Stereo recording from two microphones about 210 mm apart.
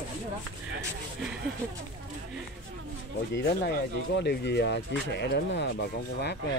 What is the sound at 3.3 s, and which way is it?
Speech, 55° left (ahead or behind).